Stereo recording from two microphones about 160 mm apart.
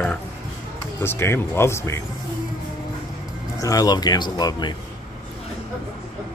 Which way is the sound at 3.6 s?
20° left (ahead or behind).